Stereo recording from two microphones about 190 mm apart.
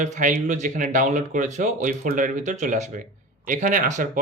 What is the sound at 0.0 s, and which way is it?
Speech, 40° right (ahead or behind).